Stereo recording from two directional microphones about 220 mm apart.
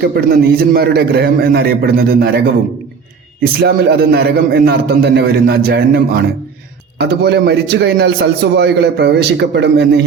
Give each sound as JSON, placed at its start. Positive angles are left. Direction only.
{"t": 0.0, "sound": "a man's voice", "side_deg": -45}
{"t": 3.4, "sound": "a man's voice", "side_deg": -45}